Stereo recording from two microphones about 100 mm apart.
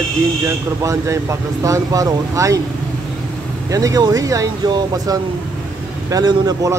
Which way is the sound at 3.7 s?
35° right (ahead or behind).